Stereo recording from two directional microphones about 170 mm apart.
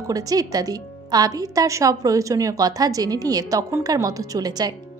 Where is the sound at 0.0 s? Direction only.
20° right (ahead or behind).